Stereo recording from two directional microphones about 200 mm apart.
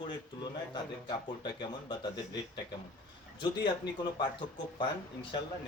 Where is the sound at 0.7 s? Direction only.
20° left (ahead or behind).